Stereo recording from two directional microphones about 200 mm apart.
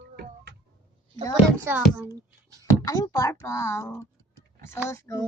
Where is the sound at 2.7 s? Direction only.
15° left (ahead or behind).